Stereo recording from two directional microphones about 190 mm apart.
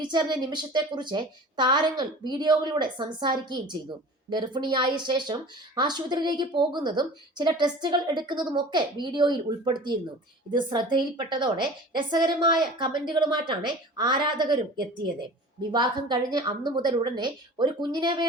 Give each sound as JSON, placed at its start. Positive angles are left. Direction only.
{"t": 0.0, "sound": "a woman's voice", "side_deg": -25}